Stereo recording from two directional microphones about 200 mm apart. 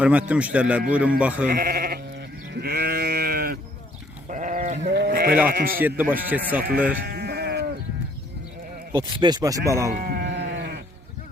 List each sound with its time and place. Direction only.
0.0 s a man's voice: 5° right (ahead or behind)
1.5 s sheep: 50° right (ahead or behind)
4.8 s sheep: 60° right (ahead or behind)
5.5 s speech: 45° right (ahead or behind)
6.0 s a man's voice: 10° right (ahead or behind)
7.0 s sheep: 55° right (ahead or behind)
9.0 s a man's voice: 20° right (ahead or behind)
9.9 s sheep: 50° right (ahead or behind)